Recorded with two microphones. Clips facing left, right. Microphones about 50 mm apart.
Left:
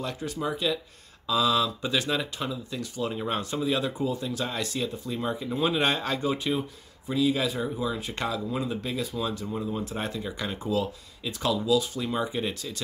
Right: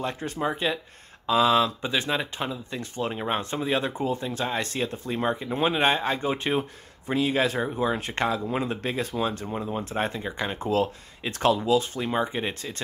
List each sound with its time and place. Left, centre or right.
0.0 s speech: right
1.9 s speech: right
9.5 s speech: right
10.6 s speech: right